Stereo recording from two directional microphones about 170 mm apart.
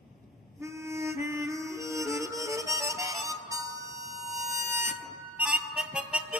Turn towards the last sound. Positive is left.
turn(degrees=-5)  # may be behind; listen again after turning